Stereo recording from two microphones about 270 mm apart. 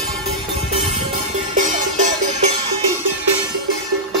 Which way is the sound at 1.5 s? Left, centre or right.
Right.